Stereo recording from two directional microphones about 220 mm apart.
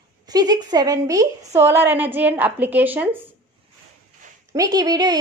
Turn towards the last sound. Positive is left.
turn(degrees=-20)  # may be behind; listen again after turning